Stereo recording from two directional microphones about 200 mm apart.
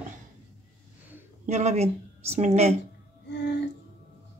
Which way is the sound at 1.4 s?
35° right (ahead or behind).